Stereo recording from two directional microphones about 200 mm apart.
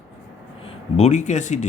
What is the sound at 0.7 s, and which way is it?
Speech, 30° left (ahead or behind).